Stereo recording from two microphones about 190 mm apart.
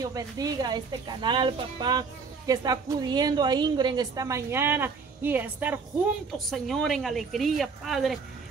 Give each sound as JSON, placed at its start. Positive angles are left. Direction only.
{"t": 0.0, "sound": "speech", "side_deg": -20}
{"t": 6.3, "sound": "speech", "side_deg": 0}